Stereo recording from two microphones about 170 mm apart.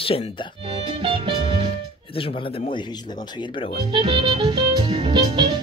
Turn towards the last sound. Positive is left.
turn(degrees=-30)  # may be behind; listen again after turning